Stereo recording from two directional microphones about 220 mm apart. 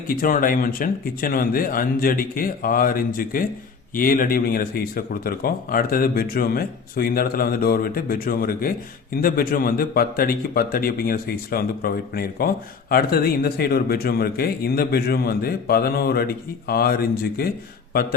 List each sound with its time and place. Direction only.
0.1 s a man's voice: 40° left (ahead or behind)